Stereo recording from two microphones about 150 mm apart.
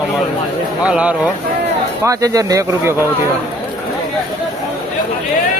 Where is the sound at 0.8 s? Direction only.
10° right (ahead or behind).